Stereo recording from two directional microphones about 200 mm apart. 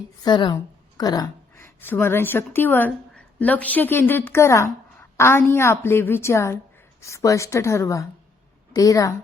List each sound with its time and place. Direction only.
0.3 s a woman's voice: 20° left (ahead or behind)